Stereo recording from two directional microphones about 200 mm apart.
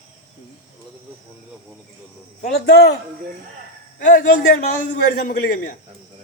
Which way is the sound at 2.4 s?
55° left (ahead or behind).